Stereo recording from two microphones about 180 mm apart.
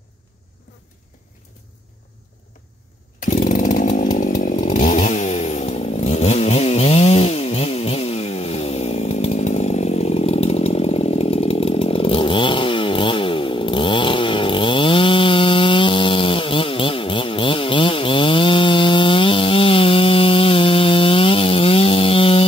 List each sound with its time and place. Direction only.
3.2 s chainsaw: 45° left (ahead or behind)